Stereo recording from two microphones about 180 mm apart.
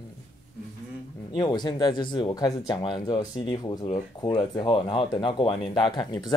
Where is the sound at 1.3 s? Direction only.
25° left (ahead or behind).